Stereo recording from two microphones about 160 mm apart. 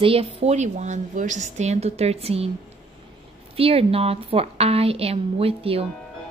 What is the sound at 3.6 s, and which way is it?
A woman's voice, 35° right (ahead or behind).